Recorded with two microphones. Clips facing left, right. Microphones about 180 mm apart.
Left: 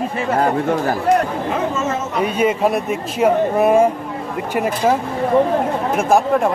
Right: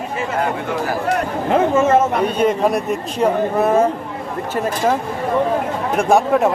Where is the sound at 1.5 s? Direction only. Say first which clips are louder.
Right 6 dB; 55° right (ahead or behind).